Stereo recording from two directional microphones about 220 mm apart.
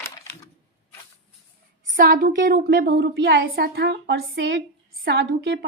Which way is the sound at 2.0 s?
40° right (ahead or behind).